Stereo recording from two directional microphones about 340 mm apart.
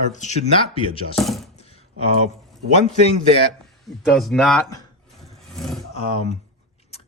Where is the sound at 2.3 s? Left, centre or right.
Centre.